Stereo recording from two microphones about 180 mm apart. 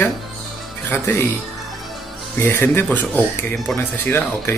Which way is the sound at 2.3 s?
10° left (ahead or behind).